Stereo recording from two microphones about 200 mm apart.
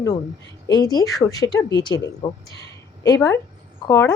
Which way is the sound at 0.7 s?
20° left (ahead or behind).